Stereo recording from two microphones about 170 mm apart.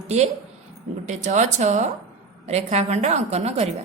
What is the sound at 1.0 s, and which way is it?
Speech, 45° right (ahead or behind).